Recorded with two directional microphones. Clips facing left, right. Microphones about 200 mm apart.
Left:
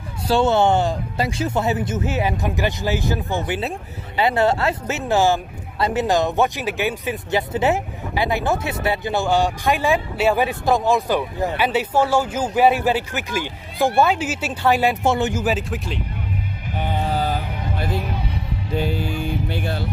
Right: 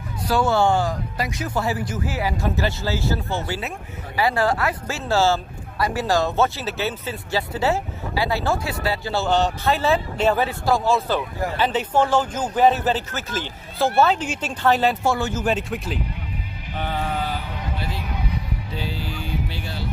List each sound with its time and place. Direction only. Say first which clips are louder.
0.3 s a man's voice: left 3 dB; 25° left (ahead or behind)
15.4 s speech: left 1 dB; centre (ahead or behind)
16.7 s music: left 2 dB; 15° left (ahead or behind)
17.0 s music: left 4 dB; 35° left (ahead or behind); by 19.9 s 55° left (ahead or behind)